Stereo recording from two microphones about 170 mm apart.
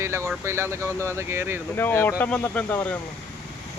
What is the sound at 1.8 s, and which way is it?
Speech, 10° left (ahead or behind).